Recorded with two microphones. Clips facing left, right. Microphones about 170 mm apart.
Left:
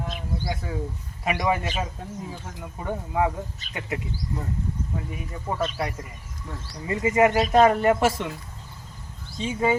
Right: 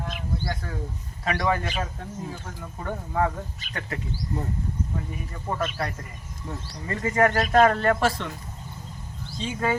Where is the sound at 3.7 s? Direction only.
35° left (ahead or behind).